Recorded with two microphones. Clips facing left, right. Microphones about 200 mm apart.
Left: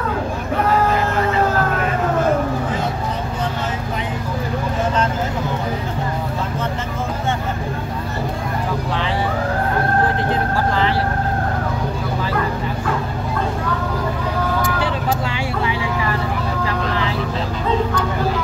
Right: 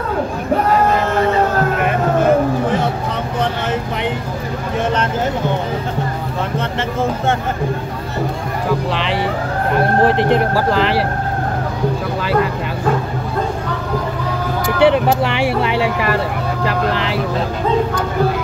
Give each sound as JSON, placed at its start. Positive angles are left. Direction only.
{"t": 10.0, "sound": "speech", "side_deg": -70}
{"t": 14.8, "sound": "vehicle", "side_deg": -70}